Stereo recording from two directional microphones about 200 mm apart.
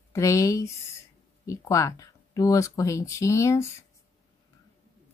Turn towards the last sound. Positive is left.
turn(degrees=15)  # may be behind; listen again after turning